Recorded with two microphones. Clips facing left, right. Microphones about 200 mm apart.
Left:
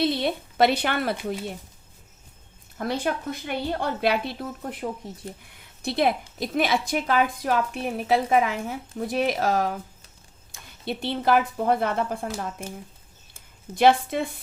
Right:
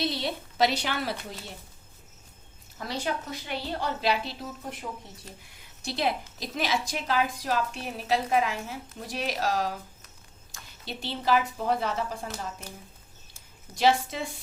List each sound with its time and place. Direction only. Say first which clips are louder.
0.0 s a woman's voice: left 6 dB; 55° left (ahead or behind)
2.7 s a woman's voice: left 5 dB; 55° left (ahead or behind)
10.8 s a woman's voice: left 5 dB; 55° left (ahead or behind)